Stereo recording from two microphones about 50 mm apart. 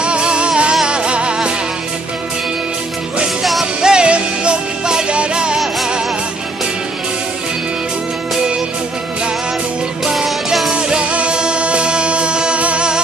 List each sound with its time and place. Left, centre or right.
0.0 s music: centre
3.8 s music: centre
10.0 s music: centre
10.7 s music: centre